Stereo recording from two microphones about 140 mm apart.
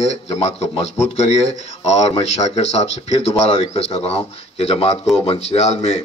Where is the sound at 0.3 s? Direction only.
50° left (ahead or behind).